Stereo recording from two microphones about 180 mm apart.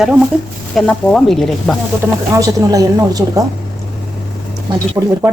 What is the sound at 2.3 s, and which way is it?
A woman's voice, 20° right (ahead or behind).